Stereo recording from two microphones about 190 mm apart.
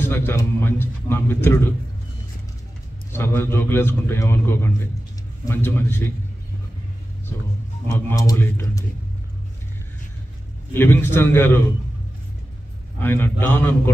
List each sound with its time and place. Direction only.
0.0 s a man's voice: 10° left (ahead or behind)
3.1 s a man's voice: 10° left (ahead or behind)
7.8 s a man's voice: 15° left (ahead or behind)
10.7 s a man's voice: 10° left (ahead or behind)
13.0 s a man's voice: 10° left (ahead or behind)